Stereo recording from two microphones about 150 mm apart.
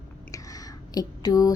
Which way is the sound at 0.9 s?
25° left (ahead or behind).